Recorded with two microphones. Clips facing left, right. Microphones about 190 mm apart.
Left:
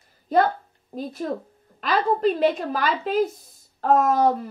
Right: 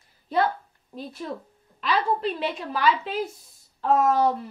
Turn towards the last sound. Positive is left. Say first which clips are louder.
# left 2 dB
turn(degrees=45)  # may be behind; listen again after turning